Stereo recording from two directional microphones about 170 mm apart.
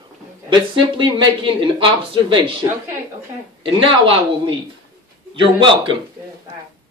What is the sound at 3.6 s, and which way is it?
Speech, 30° right (ahead or behind).